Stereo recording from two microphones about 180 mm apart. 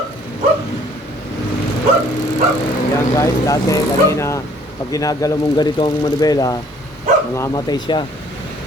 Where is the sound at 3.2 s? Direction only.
20° left (ahead or behind).